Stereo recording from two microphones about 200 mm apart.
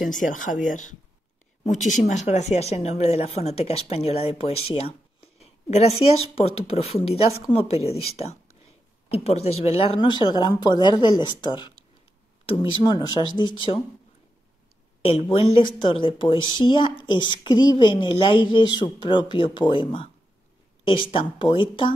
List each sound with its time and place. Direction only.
0.1 s speech: 40° left (ahead or behind); by 13.8 s 25° left (ahead or behind)
15.0 s speech: 30° left (ahead or behind)